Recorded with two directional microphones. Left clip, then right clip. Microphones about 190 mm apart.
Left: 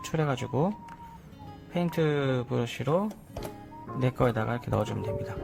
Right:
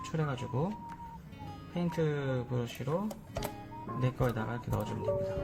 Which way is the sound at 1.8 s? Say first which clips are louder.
Left 6 dB; 40° left (ahead or behind).